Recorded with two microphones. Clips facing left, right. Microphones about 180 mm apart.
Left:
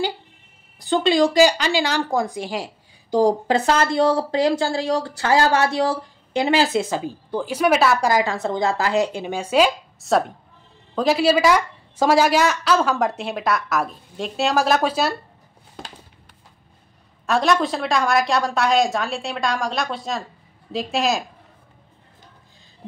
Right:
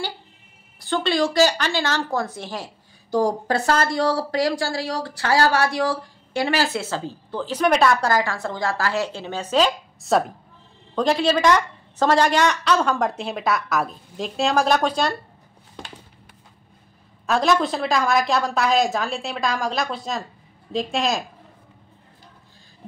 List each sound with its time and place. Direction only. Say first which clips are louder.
0.7 s a woman's voice: left 4 dB; 15° left (ahead or behind)
8.1 s a woman's voice: left 2 dB; 20° left (ahead or behind)
10.0 s a woman's voice: left 1 dB; centre (ahead or behind)
17.3 s a woman's voice: left 1 dB; centre (ahead or behind)